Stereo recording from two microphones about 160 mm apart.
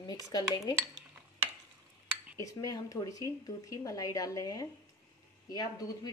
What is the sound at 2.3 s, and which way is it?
Speech, 20° left (ahead or behind).